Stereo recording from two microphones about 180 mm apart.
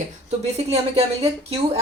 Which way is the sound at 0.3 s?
35° right (ahead or behind).